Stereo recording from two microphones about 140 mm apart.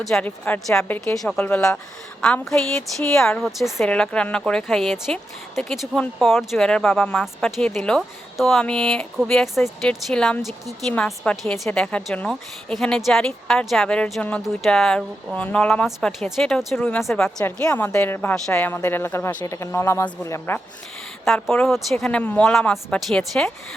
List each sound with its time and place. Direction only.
0.0 s a woman's voice: centre (ahead or behind)
0.3 s a woman's voice: 10° left (ahead or behind)
21.2 s a woman's voice: 5° left (ahead or behind)